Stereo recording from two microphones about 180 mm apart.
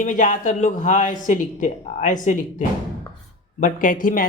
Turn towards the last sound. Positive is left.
turn(degrees=50)  # may be behind; listen again after turning